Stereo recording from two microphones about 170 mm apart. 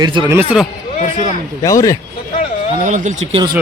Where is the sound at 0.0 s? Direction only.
25° right (ahead or behind).